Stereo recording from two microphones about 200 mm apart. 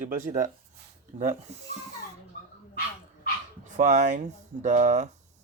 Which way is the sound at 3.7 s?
35° right (ahead or behind).